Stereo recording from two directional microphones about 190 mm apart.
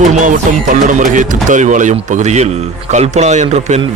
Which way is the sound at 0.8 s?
40° right (ahead or behind).